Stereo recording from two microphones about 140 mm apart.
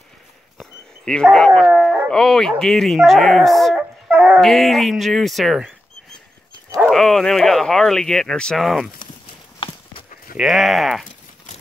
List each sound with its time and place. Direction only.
0.6 s dog: centre (ahead or behind)
1.7 s speech: 5° right (ahead or behind)
4.1 s dog: 10° right (ahead or behind)
4.4 s speech: centre (ahead or behind)
6.9 s speech: 5° left (ahead or behind)
9.6 s horse: 35° left (ahead or behind)
10.3 s speech: centre (ahead or behind)